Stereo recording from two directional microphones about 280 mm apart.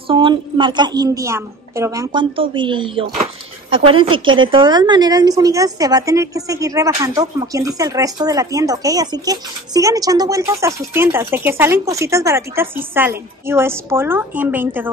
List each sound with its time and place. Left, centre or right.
0.1 s a woman's voice: centre